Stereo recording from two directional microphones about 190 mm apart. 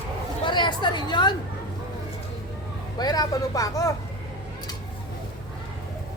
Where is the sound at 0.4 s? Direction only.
25° left (ahead or behind).